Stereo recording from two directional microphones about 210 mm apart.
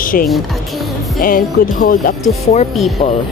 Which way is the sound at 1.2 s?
40° left (ahead or behind).